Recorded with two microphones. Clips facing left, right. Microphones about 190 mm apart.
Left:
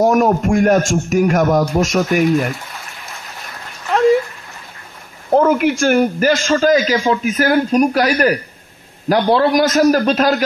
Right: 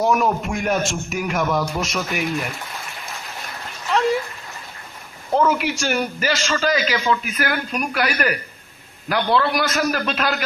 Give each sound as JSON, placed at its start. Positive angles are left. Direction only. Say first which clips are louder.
{"t": 0.0, "sound": "a man's voice", "louder": "left 6 dB", "side_deg": 45}
{"t": 5.3, "sound": "a man's voice", "louder": "left 6 dB", "side_deg": 50}